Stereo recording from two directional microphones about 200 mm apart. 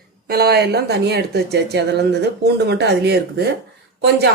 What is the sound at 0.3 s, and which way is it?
Speech, 50° right (ahead or behind).